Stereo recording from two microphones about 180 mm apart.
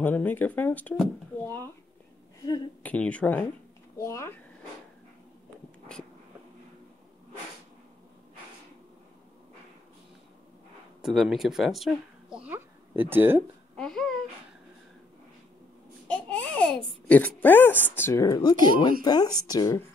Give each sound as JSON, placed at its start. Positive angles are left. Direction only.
{"t": 0.0, "sound": "speech", "side_deg": 10}
{"t": 2.8, "sound": "speech", "side_deg": 5}
{"t": 11.0, "sound": "speech", "side_deg": 0}
{"t": 13.7, "sound": "speech", "side_deg": 5}
{"t": 16.1, "sound": "babbling", "side_deg": 5}
{"t": 17.1, "sound": "speech", "side_deg": 10}